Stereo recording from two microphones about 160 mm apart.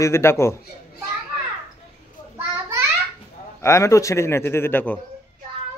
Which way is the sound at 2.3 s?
15° right (ahead or behind).